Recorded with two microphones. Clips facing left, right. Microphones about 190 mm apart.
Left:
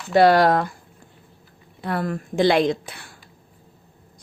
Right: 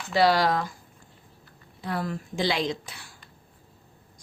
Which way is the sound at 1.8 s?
60° left (ahead or behind).